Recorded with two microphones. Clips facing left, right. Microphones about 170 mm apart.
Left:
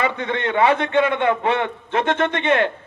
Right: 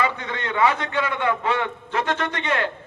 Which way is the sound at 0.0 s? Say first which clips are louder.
Left 3 dB; 25° left (ahead or behind).